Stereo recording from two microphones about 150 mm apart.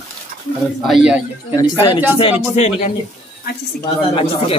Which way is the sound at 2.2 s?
45° left (ahead or behind).